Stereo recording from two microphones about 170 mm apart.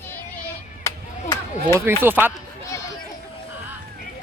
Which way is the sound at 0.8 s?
15° left (ahead or behind).